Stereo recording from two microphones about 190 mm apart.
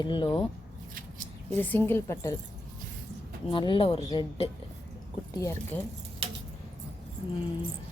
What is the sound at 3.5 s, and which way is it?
Speech, 25° left (ahead or behind).